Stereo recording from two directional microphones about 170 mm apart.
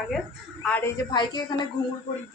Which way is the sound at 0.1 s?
5° left (ahead or behind).